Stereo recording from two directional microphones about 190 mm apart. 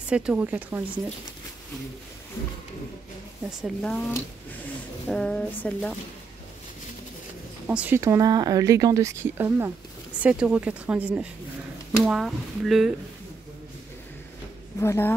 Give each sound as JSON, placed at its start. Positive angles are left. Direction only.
{"t": 0.1, "sound": "speech", "side_deg": -5}
{"t": 3.6, "sound": "speech", "side_deg": 0}
{"t": 5.0, "sound": "speech", "side_deg": 5}
{"t": 7.6, "sound": "speech", "side_deg": -10}
{"t": 14.8, "sound": "speech", "side_deg": 15}